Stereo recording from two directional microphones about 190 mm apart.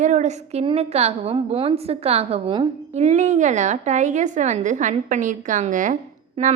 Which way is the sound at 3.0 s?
40° right (ahead or behind).